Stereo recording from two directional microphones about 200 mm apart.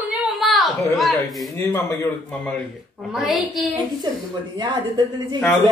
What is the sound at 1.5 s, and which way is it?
A man's voice, 10° left (ahead or behind).